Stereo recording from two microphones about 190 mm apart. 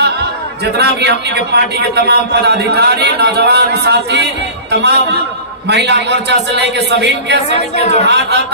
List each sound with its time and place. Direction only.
0.7 s a man's voice: 60° right (ahead or behind)
7.4 s speech: 35° left (ahead or behind)
8.1 s a man's voice: 60° right (ahead or behind)